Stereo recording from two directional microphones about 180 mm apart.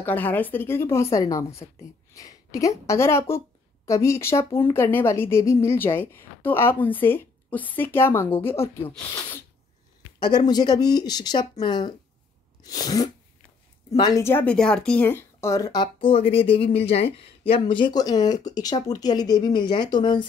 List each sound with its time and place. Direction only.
0.0 s a woman's voice: 10° left (ahead or behind)
10.1 s speech: 25° left (ahead or behind)